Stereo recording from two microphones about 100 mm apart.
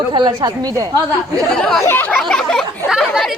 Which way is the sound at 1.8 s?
25° left (ahead or behind).